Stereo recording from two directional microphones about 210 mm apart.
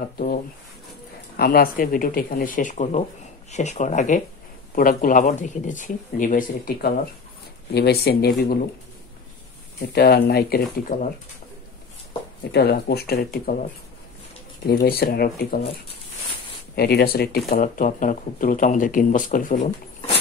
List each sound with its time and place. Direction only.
0.0 s speech: 40° left (ahead or behind)
9.8 s speech: 45° left (ahead or behind)
12.5 s speech: 50° left (ahead or behind)
14.7 s speech: 45° left (ahead or behind)
16.7 s speech: 50° left (ahead or behind)